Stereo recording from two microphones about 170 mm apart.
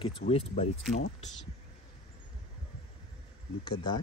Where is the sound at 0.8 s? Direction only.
Centre (ahead or behind).